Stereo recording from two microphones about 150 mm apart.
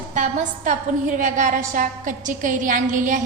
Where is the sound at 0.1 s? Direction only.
55° right (ahead or behind).